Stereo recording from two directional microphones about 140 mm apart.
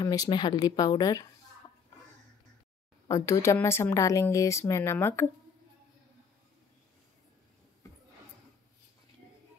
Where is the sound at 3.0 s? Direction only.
25° left (ahead or behind).